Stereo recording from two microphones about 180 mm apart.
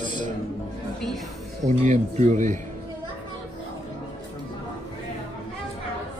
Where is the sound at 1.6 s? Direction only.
40° right (ahead or behind).